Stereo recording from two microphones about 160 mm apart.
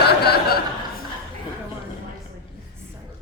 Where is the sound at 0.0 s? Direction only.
85° left.